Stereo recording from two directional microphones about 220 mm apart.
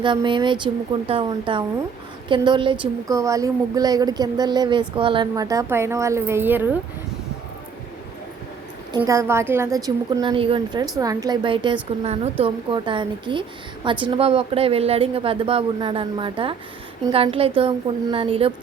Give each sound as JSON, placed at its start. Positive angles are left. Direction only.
{"t": 0.0, "sound": "a woman's voice", "side_deg": -20}
{"t": 8.9, "sound": "a woman's voice", "side_deg": -15}